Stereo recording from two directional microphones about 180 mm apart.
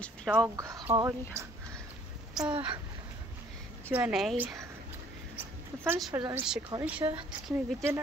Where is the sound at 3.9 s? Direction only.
5° right (ahead or behind).